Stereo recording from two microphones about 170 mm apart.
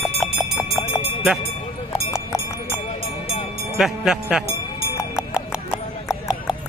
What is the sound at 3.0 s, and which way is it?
Vehicle, 35° left (ahead or behind).